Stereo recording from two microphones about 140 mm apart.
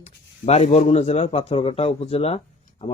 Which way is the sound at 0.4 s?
50° left (ahead or behind).